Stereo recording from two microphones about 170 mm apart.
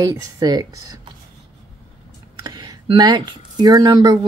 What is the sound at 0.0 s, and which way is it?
Speech, 20° right (ahead or behind).